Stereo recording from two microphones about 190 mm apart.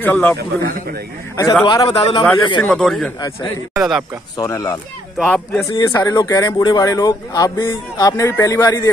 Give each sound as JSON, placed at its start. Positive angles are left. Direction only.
{"t": 0.0, "sound": "speech", "side_deg": 10}
{"t": 2.6, "sound": "speech", "side_deg": 0}
{"t": 3.2, "sound": "speech", "side_deg": 15}
{"t": 3.7, "sound": "speech", "side_deg": 0}
{"t": 4.4, "sound": "speech", "side_deg": 20}
{"t": 5.1, "sound": "speech", "side_deg": 5}
{"t": 5.7, "sound": "speech", "side_deg": 20}